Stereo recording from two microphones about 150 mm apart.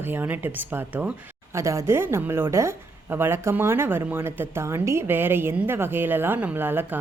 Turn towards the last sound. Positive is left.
turn(degrees=-15)  # may be behind; listen again after turning